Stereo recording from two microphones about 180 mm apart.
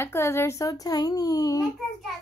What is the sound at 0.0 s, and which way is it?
A child's voice, 15° left (ahead or behind).